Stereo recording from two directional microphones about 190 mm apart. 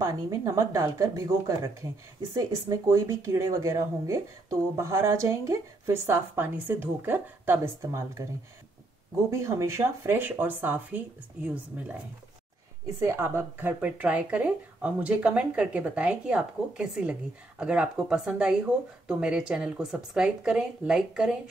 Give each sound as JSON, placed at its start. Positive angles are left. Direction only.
{"t": 0.0, "sound": "speech", "side_deg": -15}
{"t": 9.3, "sound": "speech", "side_deg": -15}
{"t": 12.8, "sound": "speech", "side_deg": -15}